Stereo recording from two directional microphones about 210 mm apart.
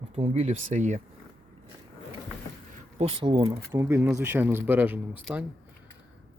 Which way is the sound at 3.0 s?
25° right (ahead or behind).